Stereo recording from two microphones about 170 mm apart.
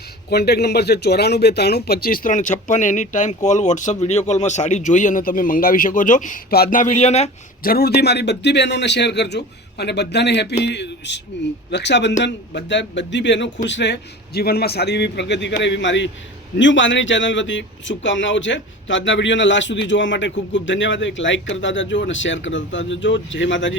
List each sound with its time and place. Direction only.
0.3 s speech: 70° left (ahead or behind); by 7.3 s 40° left (ahead or behind)
7.6 s a man's voice: 60° left (ahead or behind); by 23.7 s 90° left